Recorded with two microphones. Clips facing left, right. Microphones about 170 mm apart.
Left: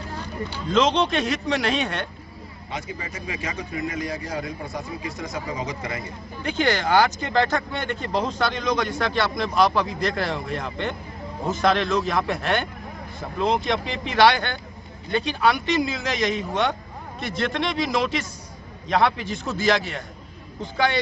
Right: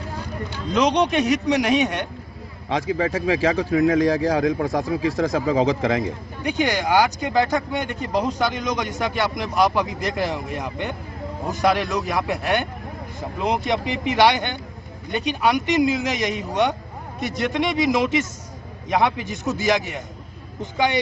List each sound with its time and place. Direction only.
0.7 s speech: 15° right (ahead or behind)
2.7 s speech: 90° right
6.4 s speech: 15° right (ahead or behind)
13.7 s speech: 15° right (ahead or behind)